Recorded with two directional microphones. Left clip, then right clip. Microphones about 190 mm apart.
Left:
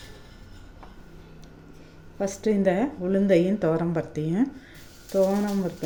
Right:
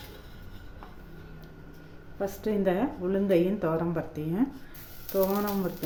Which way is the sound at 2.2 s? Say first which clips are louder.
Left 4 dB; 20° left (ahead or behind).